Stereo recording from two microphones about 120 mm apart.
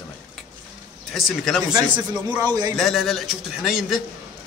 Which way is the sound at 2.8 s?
Centre (ahead or behind).